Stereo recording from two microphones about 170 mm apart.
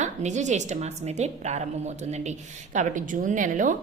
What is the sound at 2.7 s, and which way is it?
A woman's voice, 50° right (ahead or behind).